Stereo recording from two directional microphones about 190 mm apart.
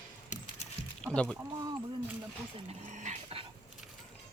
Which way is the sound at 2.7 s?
40° right (ahead or behind).